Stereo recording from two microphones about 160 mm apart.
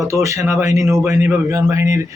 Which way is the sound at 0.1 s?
20° right (ahead or behind).